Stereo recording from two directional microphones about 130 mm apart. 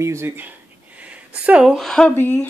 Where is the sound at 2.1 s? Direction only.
15° left (ahead or behind).